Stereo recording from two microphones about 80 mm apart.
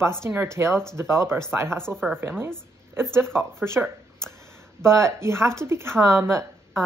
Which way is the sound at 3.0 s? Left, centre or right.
Right.